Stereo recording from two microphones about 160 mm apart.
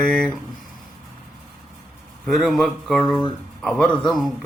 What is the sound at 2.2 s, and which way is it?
Speech, centre (ahead or behind).